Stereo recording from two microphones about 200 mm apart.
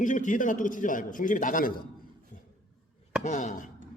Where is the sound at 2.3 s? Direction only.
40° left (ahead or behind).